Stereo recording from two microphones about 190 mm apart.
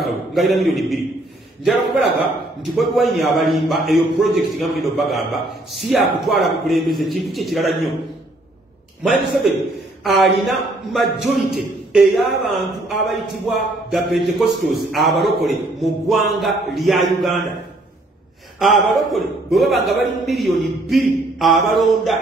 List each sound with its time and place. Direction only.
0.0 s a man's voice: centre (ahead or behind)
9.0 s a man's voice: centre (ahead or behind)
18.6 s a man's voice: centre (ahead or behind)